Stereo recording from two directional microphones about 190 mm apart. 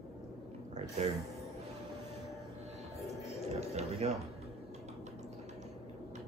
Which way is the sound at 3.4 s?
35° right (ahead or behind).